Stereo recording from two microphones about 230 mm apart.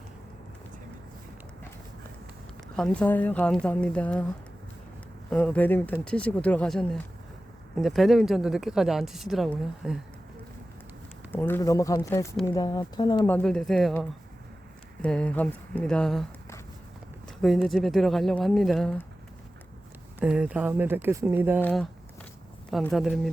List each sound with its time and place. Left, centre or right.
2.7 s a woman's voice: centre
5.3 s a woman's voice: centre
11.3 s speech: centre
13.3 s a woman's voice: centre
17.4 s a woman's voice: centre
20.1 s speech: centre
21.6 s a woman's voice: centre